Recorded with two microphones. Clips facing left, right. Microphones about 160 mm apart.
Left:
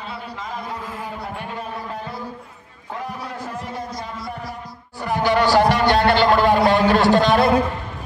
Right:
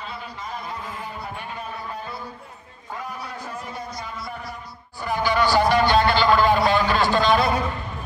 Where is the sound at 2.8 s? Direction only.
65° left (ahead or behind); by 4.2 s 90° left.